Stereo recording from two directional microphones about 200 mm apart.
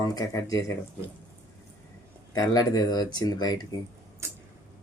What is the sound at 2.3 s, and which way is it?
Speech, 20° left (ahead or behind).